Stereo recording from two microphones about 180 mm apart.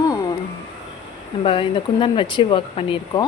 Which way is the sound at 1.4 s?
30° left (ahead or behind).